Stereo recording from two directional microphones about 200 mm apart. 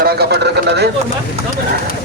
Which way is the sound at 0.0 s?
55° right (ahead or behind).